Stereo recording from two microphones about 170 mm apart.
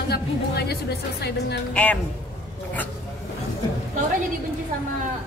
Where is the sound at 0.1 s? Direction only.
70° left (ahead or behind).